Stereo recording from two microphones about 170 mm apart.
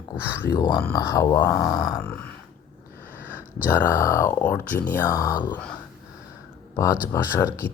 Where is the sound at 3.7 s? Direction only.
15° left (ahead or behind).